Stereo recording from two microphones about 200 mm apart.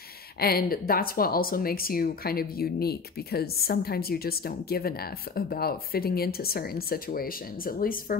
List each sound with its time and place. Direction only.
0.4 s speech: 50° left (ahead or behind)